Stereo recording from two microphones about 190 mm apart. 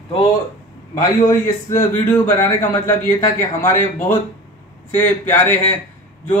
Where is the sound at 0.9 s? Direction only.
15° left (ahead or behind).